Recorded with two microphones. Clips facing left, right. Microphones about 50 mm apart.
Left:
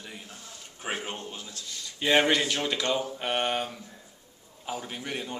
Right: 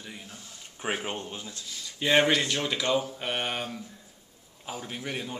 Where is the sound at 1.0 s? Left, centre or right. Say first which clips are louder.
Right 2 dB; centre.